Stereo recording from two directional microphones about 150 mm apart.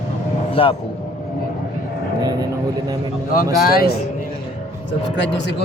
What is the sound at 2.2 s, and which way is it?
Speech, 25° right (ahead or behind).